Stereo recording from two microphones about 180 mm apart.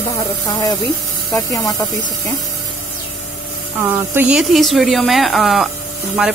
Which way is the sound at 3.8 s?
10° right (ahead or behind).